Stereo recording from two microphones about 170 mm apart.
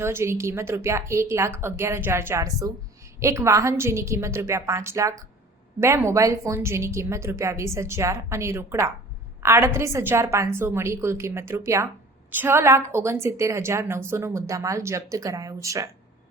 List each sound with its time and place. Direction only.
0.0 s a woman's voice: 15° right (ahead or behind)